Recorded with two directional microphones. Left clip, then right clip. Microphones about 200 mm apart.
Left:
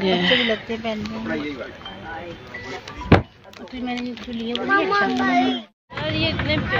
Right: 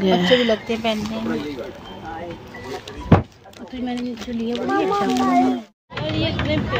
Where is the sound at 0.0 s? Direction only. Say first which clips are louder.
Right 2 dB; 20° right (ahead or behind).